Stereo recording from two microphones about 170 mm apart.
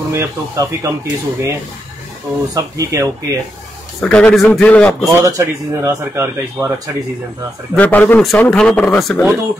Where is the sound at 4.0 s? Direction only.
5° left (ahead or behind).